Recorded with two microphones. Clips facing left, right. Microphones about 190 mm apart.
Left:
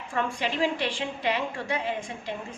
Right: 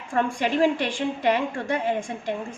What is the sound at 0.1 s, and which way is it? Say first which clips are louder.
A woman's voice: right 6 dB; 50° right (ahead or behind).